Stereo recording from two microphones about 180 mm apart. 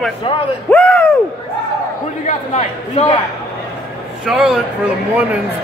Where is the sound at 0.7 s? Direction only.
5° left (ahead or behind).